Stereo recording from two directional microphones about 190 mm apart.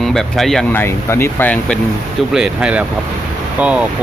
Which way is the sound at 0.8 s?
15° left (ahead or behind).